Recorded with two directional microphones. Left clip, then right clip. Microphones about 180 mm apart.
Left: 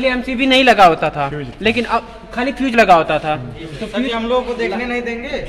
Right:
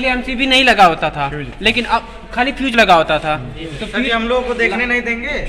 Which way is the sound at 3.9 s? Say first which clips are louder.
Right 2 dB; 15° left (ahead or behind).